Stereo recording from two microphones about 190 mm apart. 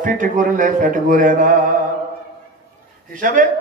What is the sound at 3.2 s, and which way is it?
Speech, 45° right (ahead or behind).